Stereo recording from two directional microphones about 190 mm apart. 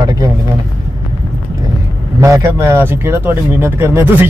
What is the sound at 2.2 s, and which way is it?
Speech, 15° right (ahead or behind).